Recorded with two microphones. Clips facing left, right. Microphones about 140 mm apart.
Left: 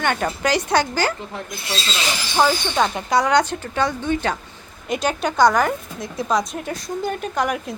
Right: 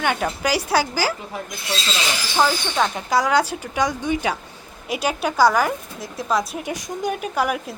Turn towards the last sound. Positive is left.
turn(degrees=-5)  # may be behind; listen again after turning